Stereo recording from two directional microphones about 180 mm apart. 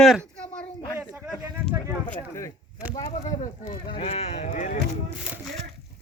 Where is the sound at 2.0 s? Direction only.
15° left (ahead or behind); by 4.8 s 45° left (ahead or behind).